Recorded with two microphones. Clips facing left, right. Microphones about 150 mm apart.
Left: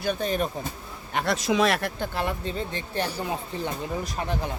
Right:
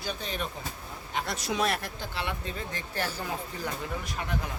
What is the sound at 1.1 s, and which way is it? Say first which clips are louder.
Speech: left 7 dB; 90° left.